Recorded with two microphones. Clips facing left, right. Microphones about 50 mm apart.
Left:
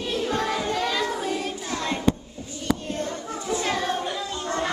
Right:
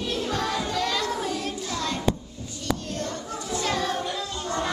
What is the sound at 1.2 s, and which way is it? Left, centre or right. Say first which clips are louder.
Singing: left 1 dB; left.